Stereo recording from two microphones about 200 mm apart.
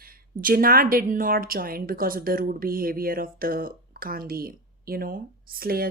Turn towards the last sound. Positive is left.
turn(degrees=-50)  # may be behind; listen again after turning